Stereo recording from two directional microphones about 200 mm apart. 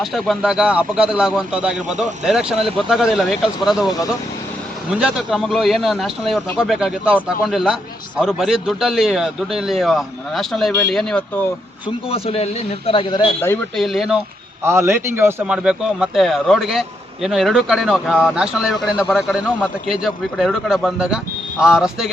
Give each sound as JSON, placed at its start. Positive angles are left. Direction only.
{"t": 0.0, "sound": "speech", "side_deg": 0}
{"t": 11.9, "sound": "a man's voice", "side_deg": 30}
{"t": 13.4, "sound": "speech", "side_deg": 10}
{"t": 13.8, "sound": "speech", "side_deg": 0}
{"t": 14.6, "sound": "speech", "side_deg": -15}